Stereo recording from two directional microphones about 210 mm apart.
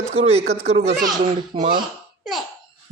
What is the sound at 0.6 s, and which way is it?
A child's voice, 30° right (ahead or behind).